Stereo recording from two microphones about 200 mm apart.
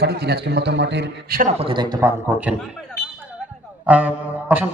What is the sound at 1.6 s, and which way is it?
Speech, 25° right (ahead or behind).